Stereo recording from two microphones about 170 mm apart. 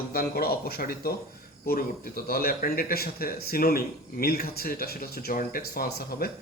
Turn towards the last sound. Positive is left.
turn(degrees=65)  # may be behind; listen again after turning